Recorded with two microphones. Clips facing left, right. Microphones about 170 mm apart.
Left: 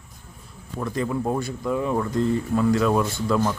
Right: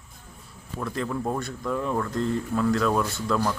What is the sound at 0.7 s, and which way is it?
Speech, 5° left (ahead or behind).